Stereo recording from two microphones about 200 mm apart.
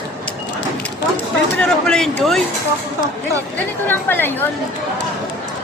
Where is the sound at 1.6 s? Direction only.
5° left (ahead or behind).